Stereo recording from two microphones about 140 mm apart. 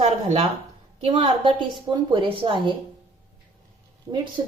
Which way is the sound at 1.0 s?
35° right (ahead or behind).